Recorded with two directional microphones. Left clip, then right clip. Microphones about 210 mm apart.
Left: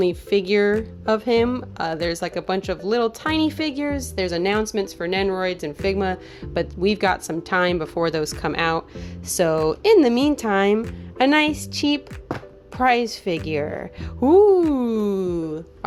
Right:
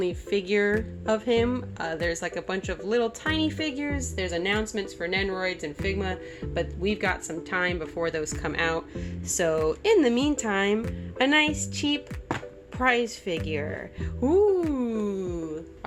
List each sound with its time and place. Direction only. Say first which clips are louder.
0.0 s speech: left 7 dB; 45° left (ahead or behind)